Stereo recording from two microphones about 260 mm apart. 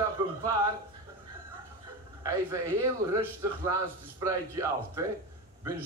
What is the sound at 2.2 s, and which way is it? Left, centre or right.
A man's voice, centre.